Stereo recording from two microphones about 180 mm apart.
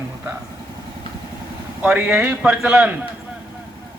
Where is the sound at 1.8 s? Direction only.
5° right (ahead or behind).